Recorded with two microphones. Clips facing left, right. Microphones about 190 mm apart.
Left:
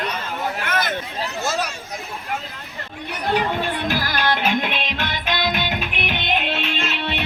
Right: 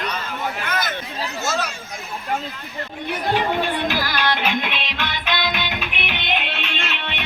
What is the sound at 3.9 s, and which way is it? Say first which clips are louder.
Music: left 1 dB; 45° left (ahead or behind).